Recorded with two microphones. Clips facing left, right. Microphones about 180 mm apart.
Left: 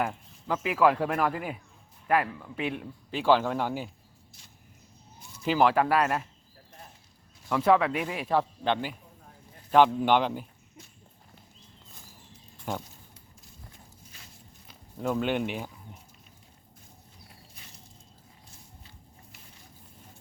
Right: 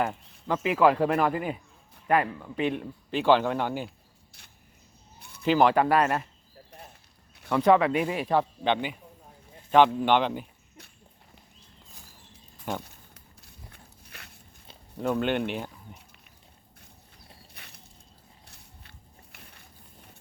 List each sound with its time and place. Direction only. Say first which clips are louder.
0.0 s a man's voice: right 2 dB; 5° left (ahead or behind)
5.2 s a sound: even; 60° right (ahead or behind)
5.5 s a man's voice: right 2 dB; 5° left (ahead or behind)
7.5 s a man's voice: right 2 dB; centre (ahead or behind)
12.7 s a man's voice: right 1 dB; 5° left (ahead or behind)
13.4 s walk: right 1 dB; 65° right (ahead or behind)
15.0 s a man's voice: right 1 dB; centre (ahead or behind)
17.5 s a sound: right 1 dB; 65° right (ahead or behind)